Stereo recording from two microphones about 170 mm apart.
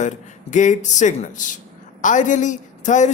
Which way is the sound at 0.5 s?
45° left (ahead or behind).